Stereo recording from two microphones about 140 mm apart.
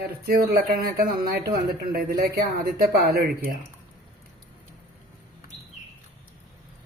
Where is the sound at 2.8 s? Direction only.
90° right.